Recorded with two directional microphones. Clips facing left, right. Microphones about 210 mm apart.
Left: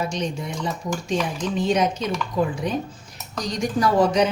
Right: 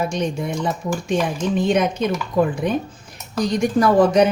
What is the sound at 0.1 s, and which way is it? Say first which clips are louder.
A woman's voice: right 4 dB; 55° right (ahead or behind).